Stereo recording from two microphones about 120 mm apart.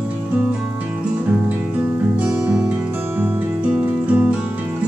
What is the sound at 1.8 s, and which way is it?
Music, 15° right (ahead or behind).